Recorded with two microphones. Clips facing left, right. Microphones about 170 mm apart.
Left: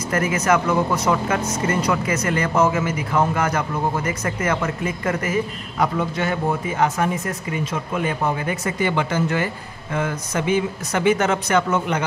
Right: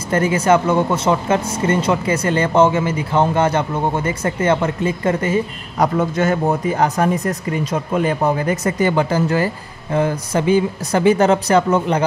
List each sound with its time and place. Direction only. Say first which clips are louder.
0.1 s speech: right 5 dB; 30° right (ahead or behind)
5.9 s speech: right 5 dB; 45° right (ahead or behind)